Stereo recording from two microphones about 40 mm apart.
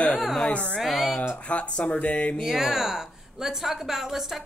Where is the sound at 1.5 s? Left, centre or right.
Left.